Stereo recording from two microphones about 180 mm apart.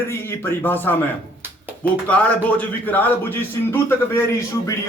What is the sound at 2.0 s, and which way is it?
A man's voice, 10° left (ahead or behind).